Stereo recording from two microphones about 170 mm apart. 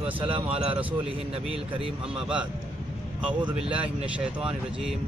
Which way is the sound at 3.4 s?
35° right (ahead or behind).